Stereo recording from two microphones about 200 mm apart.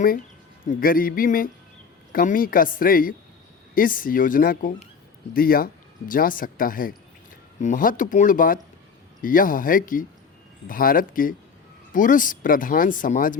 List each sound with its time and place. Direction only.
0.6 s speech: 45° left (ahead or behind)